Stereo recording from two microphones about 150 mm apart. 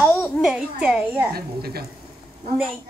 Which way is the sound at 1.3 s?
90° right.